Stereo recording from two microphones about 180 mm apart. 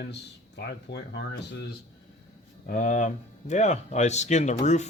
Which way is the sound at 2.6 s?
50° left (ahead or behind).